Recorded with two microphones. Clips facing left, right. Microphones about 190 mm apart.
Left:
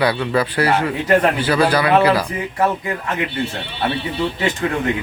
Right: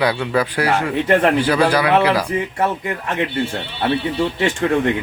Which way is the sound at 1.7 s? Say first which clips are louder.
Left 1 dB; 10° right (ahead or behind).